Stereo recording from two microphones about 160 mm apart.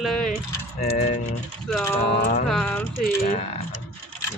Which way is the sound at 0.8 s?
45° left (ahead or behind).